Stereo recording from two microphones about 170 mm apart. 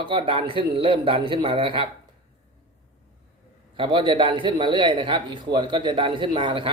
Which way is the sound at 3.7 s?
30° right (ahead or behind).